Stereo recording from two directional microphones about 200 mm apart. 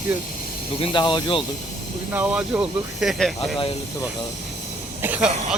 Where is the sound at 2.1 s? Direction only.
5° right (ahead or behind).